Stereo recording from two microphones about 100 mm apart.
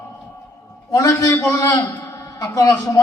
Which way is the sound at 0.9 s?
35° left (ahead or behind).